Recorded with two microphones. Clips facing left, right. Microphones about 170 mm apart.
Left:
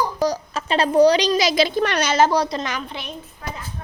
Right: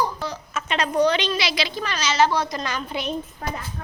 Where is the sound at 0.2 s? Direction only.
40° left (ahead or behind).